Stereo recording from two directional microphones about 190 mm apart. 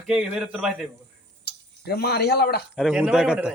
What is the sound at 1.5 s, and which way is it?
Speech, 60° left (ahead or behind).